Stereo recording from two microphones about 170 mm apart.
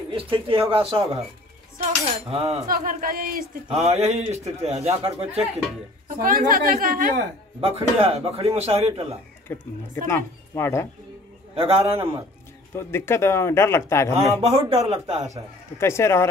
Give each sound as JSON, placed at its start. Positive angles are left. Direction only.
{"t": 0.1, "sound": "a man's voice", "side_deg": -30}
{"t": 2.7, "sound": "a woman's voice", "side_deg": -55}
{"t": 3.7, "sound": "a man's voice", "side_deg": -40}
{"t": 6.0, "sound": "a woman's voice", "side_deg": -55}
{"t": 7.6, "sound": "a man's voice", "side_deg": -35}
{"t": 9.5, "sound": "speech", "side_deg": 15}
{"t": 11.5, "sound": "a man's voice", "side_deg": -35}
{"t": 12.7, "sound": "speech", "side_deg": 15}
{"t": 14.1, "sound": "a man's voice", "side_deg": -40}
{"t": 15.8, "sound": "speech", "side_deg": 15}